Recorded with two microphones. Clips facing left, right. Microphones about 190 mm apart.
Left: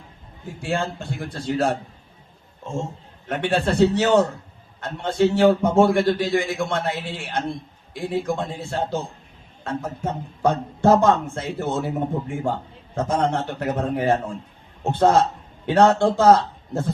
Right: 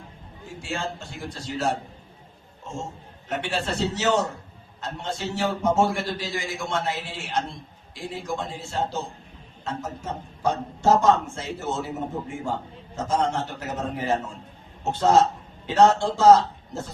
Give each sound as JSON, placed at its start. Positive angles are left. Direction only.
{"t": 0.6, "sound": "a man's voice", "side_deg": 60}
{"t": 3.2, "sound": "a man's voice", "side_deg": 55}
{"t": 13.1, "sound": "a man's voice", "side_deg": 60}